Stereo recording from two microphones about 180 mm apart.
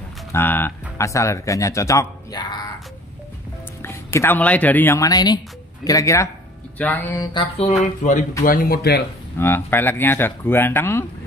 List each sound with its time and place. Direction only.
0.3 s speech: 10° left (ahead or behind)
3.8 s speech: 15° left (ahead or behind)
7.2 s a sound: 30° left (ahead or behind)
7.8 s speech: 40° left (ahead or behind)
8.5 s speech: 55° left (ahead or behind)
9.4 s speech: 10° left (ahead or behind)